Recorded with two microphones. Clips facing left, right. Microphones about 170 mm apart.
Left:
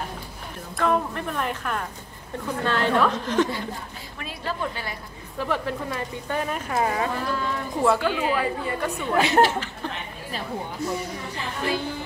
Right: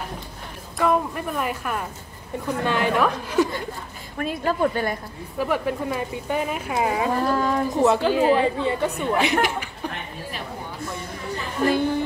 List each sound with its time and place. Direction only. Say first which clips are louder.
0.7 s speech: right 2 dB; 10° right (ahead or behind)
4.2 s a woman's voice: right 8 dB; 50° right (ahead or behind)
5.4 s speech: right 3 dB; 10° right (ahead or behind)
7.2 s a woman's voice: right 6 dB; 45° right (ahead or behind)
7.8 s a woman's voice: right 1 dB; 20° right (ahead or behind)
8.1 s a woman's voice: right 7 dB; 40° right (ahead or behind)
8.4 s a woman's voice: right 5 dB; 20° right (ahead or behind)
11.6 s a woman's voice: right 7 dB; 55° right (ahead or behind)